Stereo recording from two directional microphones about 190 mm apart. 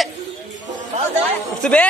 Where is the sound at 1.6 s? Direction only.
5° left (ahead or behind).